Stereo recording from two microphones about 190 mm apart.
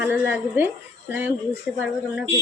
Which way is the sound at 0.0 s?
10° right (ahead or behind).